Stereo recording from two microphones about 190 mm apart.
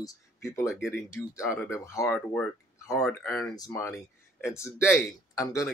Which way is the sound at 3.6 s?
20° left (ahead or behind).